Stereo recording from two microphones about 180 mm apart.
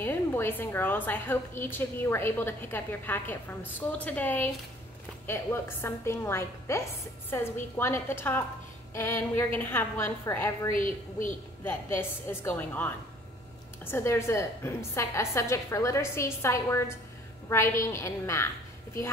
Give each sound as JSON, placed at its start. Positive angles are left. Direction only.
{"t": 0.0, "sound": "a woman's voice", "side_deg": 15}
{"t": 10.8, "sound": "a woman's voice", "side_deg": 45}
{"t": 11.6, "sound": "a woman's voice", "side_deg": 10}